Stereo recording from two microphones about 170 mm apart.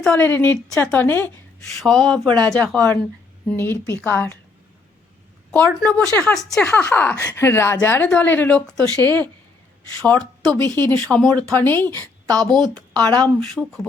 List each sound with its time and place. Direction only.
0.0 s a woman's voice: 10° left (ahead or behind)
5.5 s a woman's voice: 5° left (ahead or behind)